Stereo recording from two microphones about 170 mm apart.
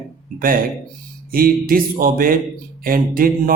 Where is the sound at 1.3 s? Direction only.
60° right (ahead or behind).